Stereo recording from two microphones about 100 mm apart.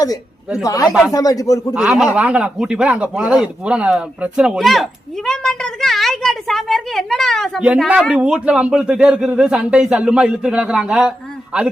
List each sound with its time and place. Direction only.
0.6 s speech: 35° left (ahead or behind)
1.7 s speech: 5° right (ahead or behind)
7.9 s speech: 10° right (ahead or behind)